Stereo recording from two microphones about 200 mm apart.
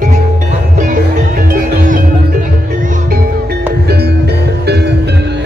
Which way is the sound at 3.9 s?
55° right (ahead or behind).